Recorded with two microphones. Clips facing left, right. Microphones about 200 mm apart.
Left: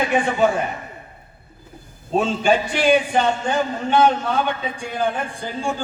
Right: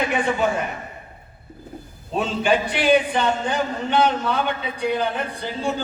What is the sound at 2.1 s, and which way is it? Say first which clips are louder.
A man's voice: left 2 dB; 45° left (ahead or behind).